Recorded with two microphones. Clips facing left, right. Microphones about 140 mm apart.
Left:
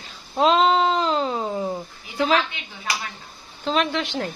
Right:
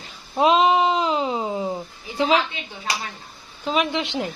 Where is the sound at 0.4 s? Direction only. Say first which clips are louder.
Right 1 dB; 15° right (ahead or behind).